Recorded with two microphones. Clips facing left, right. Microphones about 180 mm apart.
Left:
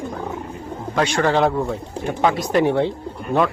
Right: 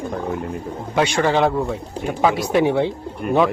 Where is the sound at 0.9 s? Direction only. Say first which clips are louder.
Right 1 dB; 5° right (ahead or behind).